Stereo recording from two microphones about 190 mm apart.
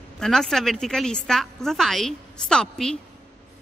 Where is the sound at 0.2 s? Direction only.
Centre (ahead or behind).